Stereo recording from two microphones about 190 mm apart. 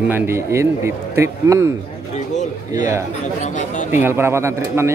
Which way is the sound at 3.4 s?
40° left (ahead or behind).